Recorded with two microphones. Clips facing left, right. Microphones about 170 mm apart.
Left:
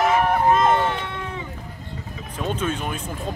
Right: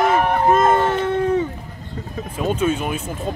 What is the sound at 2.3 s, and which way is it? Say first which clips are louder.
Speech: right 5 dB; 10° right (ahead or behind).